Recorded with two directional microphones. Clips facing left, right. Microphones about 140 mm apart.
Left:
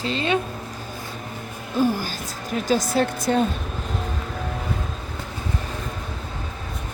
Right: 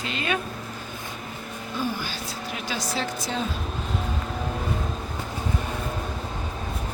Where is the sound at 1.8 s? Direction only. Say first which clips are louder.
Left 8 dB; 45° left (ahead or behind).